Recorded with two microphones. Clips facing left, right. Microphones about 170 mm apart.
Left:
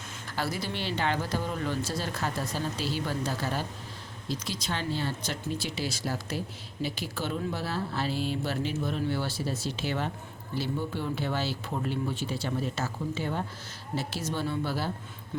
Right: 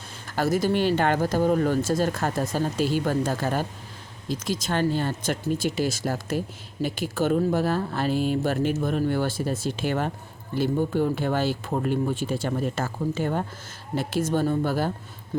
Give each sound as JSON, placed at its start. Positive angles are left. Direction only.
{"t": 0.3, "sound": "speech", "side_deg": -45}